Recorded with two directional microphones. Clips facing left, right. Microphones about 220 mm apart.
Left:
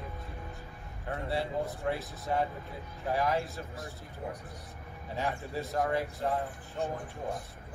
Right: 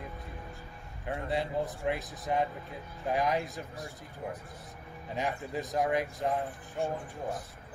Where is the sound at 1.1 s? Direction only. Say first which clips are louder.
Right 1 dB; 15° right (ahead or behind).